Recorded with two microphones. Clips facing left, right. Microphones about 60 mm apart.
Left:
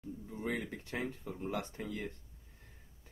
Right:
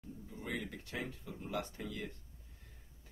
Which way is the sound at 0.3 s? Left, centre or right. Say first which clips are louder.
Left 4 dB; left.